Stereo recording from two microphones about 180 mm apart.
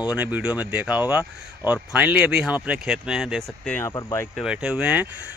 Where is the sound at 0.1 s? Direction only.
5° right (ahead or behind).